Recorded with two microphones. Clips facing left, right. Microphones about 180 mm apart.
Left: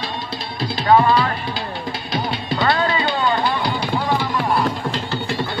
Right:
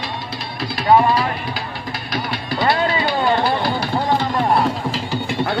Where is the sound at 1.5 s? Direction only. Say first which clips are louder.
Left 1 dB; 25° left (ahead or behind).